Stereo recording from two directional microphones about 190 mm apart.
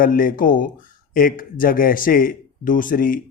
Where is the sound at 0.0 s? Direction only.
45° left (ahead or behind).